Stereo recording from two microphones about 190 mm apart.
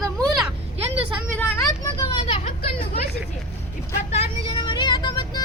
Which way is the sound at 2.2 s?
30° left (ahead or behind).